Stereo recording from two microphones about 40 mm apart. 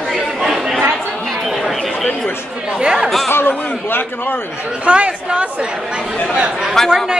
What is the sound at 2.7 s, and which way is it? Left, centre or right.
Chatter, right.